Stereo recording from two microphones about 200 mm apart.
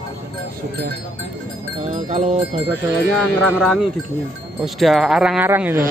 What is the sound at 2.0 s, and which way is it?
Bell, 35° right (ahead or behind).